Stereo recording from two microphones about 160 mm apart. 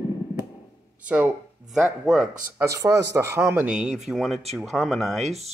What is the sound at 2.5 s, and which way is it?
A man's voice, 20° right (ahead or behind).